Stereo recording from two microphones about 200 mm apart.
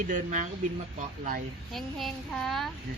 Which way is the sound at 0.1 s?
40° right (ahead or behind).